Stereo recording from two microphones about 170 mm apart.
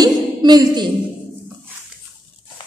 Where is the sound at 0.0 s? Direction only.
25° right (ahead or behind).